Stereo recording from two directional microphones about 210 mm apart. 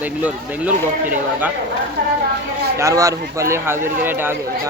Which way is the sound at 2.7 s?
15° right (ahead or behind).